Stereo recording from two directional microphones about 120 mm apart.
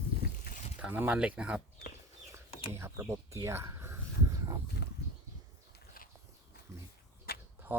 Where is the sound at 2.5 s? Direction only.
45° left (ahead or behind).